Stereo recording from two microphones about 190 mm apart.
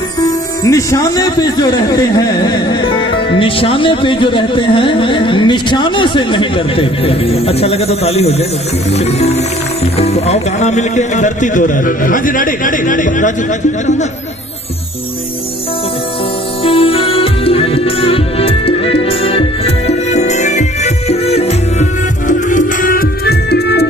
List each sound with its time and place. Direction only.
0.7 s a man's voice: 15° left (ahead or behind); by 14.0 s 40° left (ahead or behind)
16.6 s music: 30° left (ahead or behind)
22.5 s music: 45° left (ahead or behind); by 23.9 s 60° left (ahead or behind)